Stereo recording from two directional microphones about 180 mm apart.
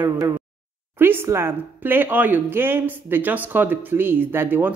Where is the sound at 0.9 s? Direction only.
10° right (ahead or behind).